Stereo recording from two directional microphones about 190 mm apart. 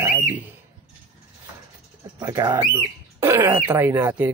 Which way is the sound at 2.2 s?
15° right (ahead or behind).